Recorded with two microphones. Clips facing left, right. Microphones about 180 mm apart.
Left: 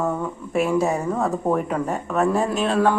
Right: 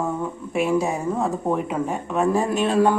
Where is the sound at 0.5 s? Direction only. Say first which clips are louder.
Left 1 dB; centre (ahead or behind).